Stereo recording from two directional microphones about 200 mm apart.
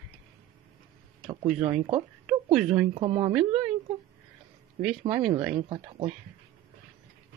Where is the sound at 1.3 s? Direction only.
30° right (ahead or behind).